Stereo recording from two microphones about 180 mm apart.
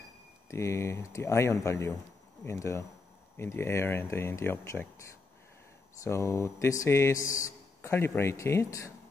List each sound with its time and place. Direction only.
0.5 s speech: 15° left (ahead or behind)